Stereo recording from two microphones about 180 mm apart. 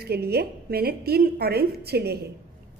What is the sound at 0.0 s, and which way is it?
A woman's voice, 60° right (ahead or behind).